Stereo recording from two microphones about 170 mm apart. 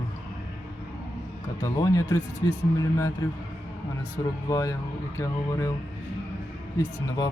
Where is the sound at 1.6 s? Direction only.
20° left (ahead or behind).